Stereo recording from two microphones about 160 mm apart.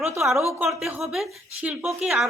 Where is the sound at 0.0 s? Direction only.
15° right (ahead or behind).